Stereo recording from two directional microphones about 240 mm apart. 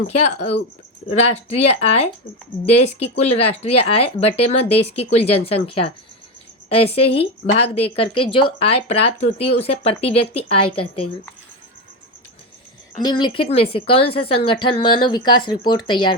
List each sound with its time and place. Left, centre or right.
0.2 s a woman's voice: left
13.0 s a woman's voice: centre